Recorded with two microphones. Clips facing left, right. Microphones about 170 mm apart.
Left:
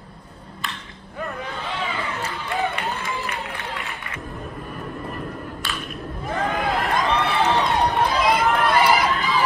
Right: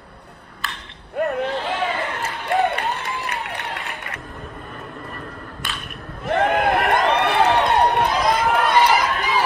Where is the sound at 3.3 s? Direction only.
65° right (ahead or behind).